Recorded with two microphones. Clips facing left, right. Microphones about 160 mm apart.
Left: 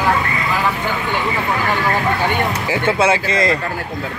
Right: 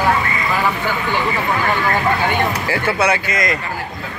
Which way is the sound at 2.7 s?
25° left (ahead or behind).